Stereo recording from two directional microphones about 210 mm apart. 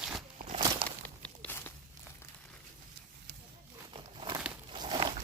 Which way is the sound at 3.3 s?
55° right (ahead or behind).